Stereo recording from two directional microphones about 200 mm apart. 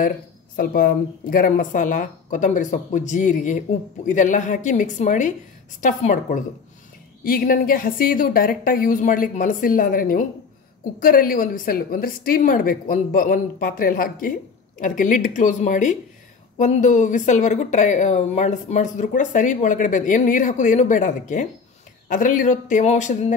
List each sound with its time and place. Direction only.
0.6 s a woman's voice: 45° left (ahead or behind)